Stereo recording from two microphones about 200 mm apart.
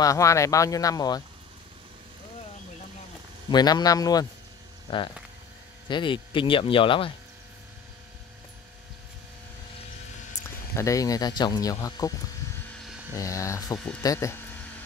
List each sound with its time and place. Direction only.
0.0 s speech: 15° left (ahead or behind)
3.4 s speech: 20° left (ahead or behind)
5.9 s speech: 25° left (ahead or behind)
10.7 s speech: 15° left (ahead or behind)
13.1 s speech: 15° left (ahead or behind)